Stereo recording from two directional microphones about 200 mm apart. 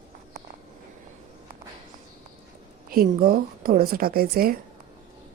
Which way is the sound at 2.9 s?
45° right (ahead or behind).